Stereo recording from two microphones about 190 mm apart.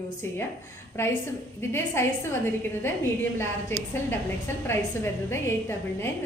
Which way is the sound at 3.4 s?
10° left (ahead or behind).